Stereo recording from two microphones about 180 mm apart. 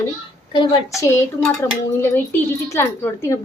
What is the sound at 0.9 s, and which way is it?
Speech, 15° left (ahead or behind).